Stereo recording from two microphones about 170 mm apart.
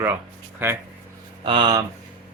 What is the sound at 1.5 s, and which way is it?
Speech, 25° right (ahead or behind).